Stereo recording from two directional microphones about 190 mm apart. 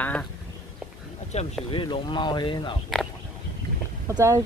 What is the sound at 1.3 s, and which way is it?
Speech, 35° left (ahead or behind).